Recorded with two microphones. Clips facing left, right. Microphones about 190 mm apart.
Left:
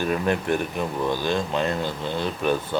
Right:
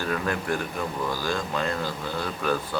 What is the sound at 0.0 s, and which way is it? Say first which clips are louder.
Speech: left 4 dB; 20° left (ahead or behind).